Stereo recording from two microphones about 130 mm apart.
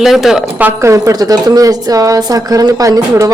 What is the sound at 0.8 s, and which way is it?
A woman's voice, 25° right (ahead or behind).